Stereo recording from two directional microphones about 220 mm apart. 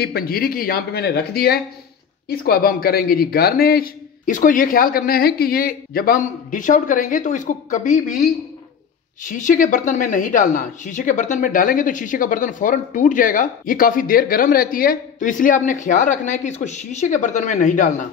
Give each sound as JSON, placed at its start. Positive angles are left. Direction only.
{"t": 0.0, "sound": "speech", "side_deg": 45}
{"t": 9.2, "sound": "speech", "side_deg": 35}